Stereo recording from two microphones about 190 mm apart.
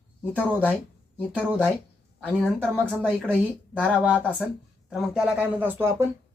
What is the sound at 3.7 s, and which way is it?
A woman's voice, 5° left (ahead or behind).